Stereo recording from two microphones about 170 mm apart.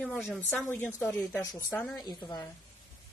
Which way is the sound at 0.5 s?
10° left (ahead or behind).